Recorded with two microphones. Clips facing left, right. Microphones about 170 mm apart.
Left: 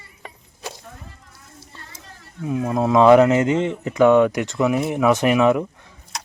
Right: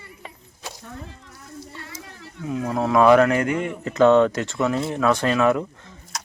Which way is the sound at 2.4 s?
20° left (ahead or behind).